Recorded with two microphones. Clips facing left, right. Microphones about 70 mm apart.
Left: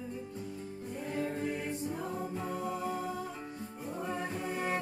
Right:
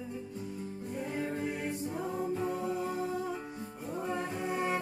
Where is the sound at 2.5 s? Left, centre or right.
Centre.